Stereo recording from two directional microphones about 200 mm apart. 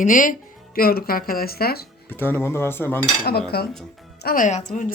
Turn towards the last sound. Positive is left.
turn(degrees=35)  # may be behind; listen again after turning